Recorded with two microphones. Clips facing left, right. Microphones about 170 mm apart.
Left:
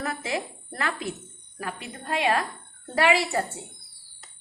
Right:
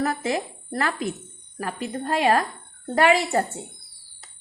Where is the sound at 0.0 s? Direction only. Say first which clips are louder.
Right 5 dB; 40° right (ahead or behind).